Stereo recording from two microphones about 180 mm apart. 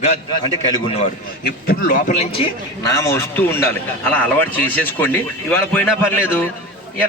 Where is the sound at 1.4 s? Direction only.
60° left (ahead or behind).